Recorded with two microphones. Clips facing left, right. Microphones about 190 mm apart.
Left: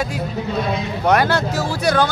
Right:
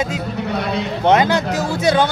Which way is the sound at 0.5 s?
65° right (ahead or behind).